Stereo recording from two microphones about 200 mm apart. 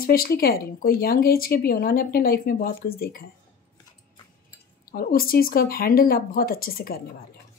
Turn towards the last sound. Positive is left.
turn(degrees=45)  # may be behind; listen again after turning